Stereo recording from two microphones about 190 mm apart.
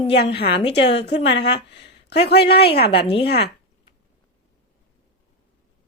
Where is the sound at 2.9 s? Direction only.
30° left (ahead or behind).